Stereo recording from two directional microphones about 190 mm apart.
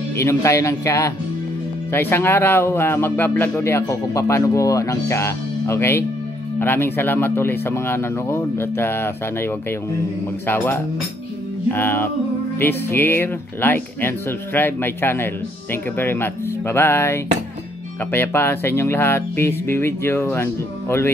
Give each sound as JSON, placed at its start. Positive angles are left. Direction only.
{"t": 0.2, "sound": "speech", "side_deg": 15}